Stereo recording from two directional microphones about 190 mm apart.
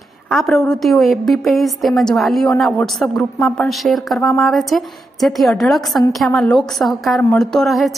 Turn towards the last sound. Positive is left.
turn(degrees=0)  # may be behind; listen again after turning